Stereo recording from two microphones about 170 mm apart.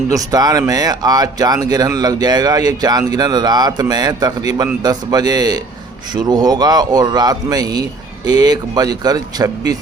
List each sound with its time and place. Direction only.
0.1 s speech: 20° right (ahead or behind)